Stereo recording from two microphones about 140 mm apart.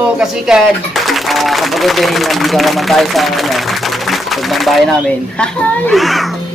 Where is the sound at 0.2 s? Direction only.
5° right (ahead or behind).